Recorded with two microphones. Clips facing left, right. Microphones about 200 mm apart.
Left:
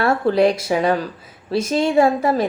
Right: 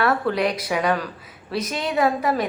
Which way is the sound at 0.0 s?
30° left (ahead or behind).